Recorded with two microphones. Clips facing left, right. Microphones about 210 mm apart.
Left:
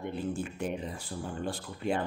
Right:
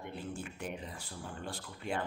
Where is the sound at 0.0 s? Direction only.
25° left (ahead or behind).